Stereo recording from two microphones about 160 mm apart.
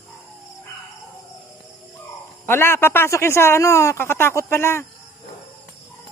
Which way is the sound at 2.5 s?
15° left (ahead or behind).